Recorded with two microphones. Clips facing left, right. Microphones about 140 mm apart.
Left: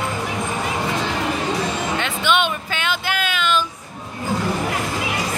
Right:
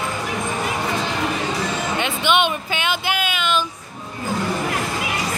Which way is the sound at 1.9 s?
15° right (ahead or behind).